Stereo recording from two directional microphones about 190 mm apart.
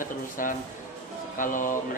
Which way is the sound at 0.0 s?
45° left (ahead or behind).